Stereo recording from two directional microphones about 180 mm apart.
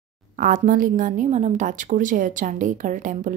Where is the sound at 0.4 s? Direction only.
50° right (ahead or behind).